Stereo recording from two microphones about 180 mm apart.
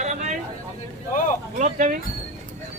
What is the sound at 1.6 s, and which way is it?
Speech, 40° right (ahead or behind).